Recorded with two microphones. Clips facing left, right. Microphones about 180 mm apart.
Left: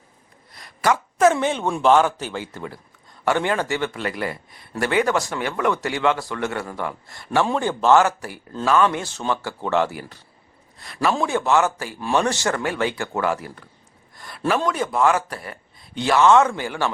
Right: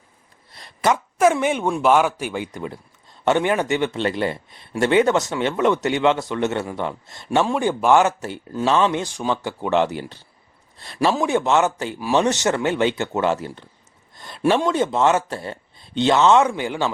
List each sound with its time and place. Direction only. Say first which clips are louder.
0.5 s a sound: right 1 dB; 25° right (ahead or behind)
1.2 s a man's voice: even; 10° right (ahead or behind); by 11.1 s 30° right (ahead or behind)
11.1 s a man's voice: even; 15° right (ahead or behind)